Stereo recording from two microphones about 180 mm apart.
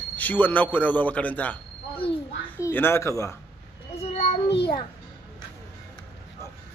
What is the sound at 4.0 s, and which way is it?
Child singing, 35° left (ahead or behind).